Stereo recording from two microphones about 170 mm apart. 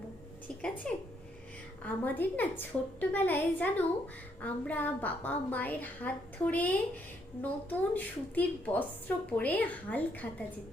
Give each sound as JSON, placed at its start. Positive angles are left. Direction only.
{"t": 0.4, "sound": "a woman's voice", "side_deg": 5}